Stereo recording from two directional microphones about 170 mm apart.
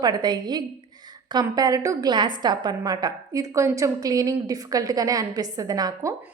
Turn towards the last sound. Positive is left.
turn(degrees=-20)  # may be behind; listen again after turning